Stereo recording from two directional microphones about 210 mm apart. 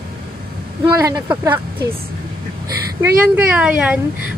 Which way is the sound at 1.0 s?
15° right (ahead or behind).